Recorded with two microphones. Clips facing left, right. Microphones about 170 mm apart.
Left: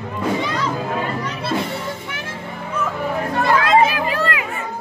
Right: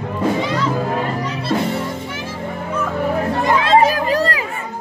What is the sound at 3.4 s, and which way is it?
Chatter, 25° right (ahead or behind).